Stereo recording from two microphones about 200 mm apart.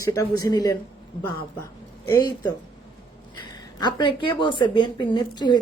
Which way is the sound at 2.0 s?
15° left (ahead or behind).